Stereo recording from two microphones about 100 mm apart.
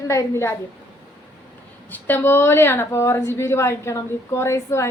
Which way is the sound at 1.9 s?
20° left (ahead or behind).